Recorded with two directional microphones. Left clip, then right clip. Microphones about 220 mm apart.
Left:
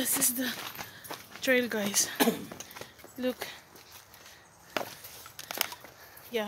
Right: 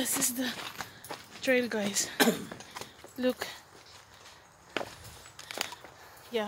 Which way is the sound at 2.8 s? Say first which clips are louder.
Right 3 dB; 20° right (ahead or behind).